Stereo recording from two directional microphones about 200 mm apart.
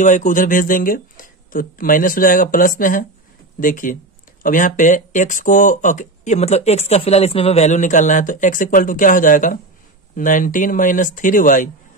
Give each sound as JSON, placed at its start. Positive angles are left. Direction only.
{"t": 0.0, "sound": "speech", "side_deg": 40}